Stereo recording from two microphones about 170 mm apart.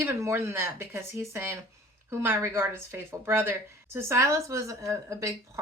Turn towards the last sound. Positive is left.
turn(degrees=-20)  # may be behind; listen again after turning